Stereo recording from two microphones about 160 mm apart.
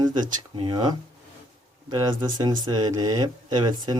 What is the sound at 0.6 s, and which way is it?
Speech, 30° right (ahead or behind).